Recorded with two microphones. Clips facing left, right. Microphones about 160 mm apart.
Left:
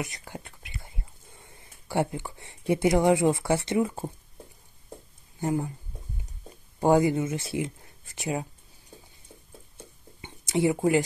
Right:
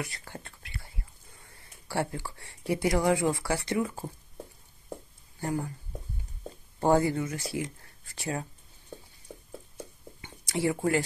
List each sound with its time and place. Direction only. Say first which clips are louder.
0.0 s speech: left 3 dB; 15° left (ahead or behind)
5.4 s speech: left 4 dB; 20° left (ahead or behind)
6.8 s speech: left 3 dB; 15° left (ahead or behind)
9.8 s a sound: right 3 dB; 20° left (ahead or behind)